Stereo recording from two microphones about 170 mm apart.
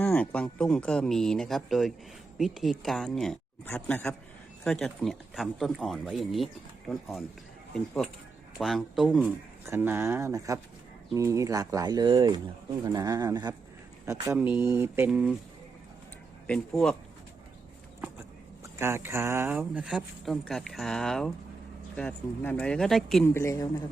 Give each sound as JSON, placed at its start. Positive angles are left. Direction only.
{"t": 0.0, "sound": "speech", "side_deg": 10}
{"t": 16.5, "sound": "speech", "side_deg": 5}
{"t": 18.6, "sound": "speech", "side_deg": -15}
{"t": 23.3, "sound": "speech", "side_deg": 15}